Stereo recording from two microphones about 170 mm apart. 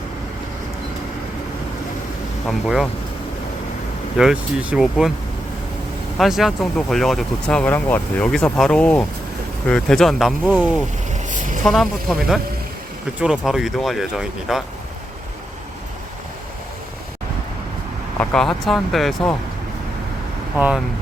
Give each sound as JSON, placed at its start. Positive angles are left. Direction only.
{"t": 2.5, "sound": "speech", "side_deg": 0}
{"t": 4.2, "sound": "speech", "side_deg": -5}
{"t": 6.1, "sound": "speech", "side_deg": 0}
{"t": 11.1, "sound": "vehicle", "side_deg": -50}
{"t": 11.6, "sound": "speech", "side_deg": 0}
{"t": 18.2, "sound": "speech", "side_deg": 5}
{"t": 20.6, "sound": "speech", "side_deg": -5}